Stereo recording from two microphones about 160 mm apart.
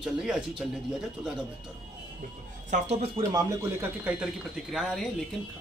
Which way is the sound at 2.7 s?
45° right (ahead or behind).